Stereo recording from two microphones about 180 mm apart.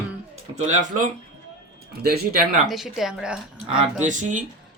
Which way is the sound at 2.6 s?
Centre (ahead or behind).